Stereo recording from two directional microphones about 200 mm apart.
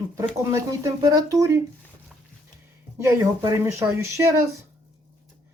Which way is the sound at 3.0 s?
15° right (ahead or behind).